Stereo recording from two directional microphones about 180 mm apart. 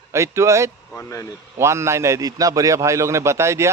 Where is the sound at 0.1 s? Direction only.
15° right (ahead or behind).